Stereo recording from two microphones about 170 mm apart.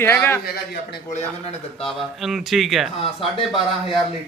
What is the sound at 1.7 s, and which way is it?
Speech, centre (ahead or behind).